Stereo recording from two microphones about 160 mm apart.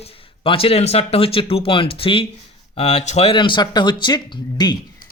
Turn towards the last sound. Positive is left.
turn(degrees=25)  # may be behind; listen again after turning